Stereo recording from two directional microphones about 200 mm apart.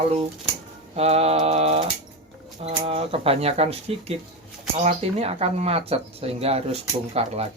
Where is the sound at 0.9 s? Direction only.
30° right (ahead or behind).